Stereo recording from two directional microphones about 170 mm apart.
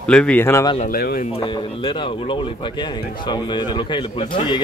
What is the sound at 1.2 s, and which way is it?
Speech, 35° left (ahead or behind).